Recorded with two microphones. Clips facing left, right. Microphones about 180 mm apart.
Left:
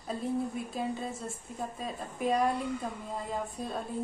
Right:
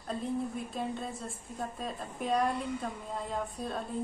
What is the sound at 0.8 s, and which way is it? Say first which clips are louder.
A woman's voice: left 2 dB; centre (ahead or behind).